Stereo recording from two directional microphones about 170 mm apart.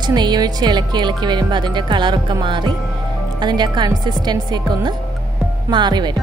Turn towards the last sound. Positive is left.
turn(degrees=-25)  # may be behind; listen again after turning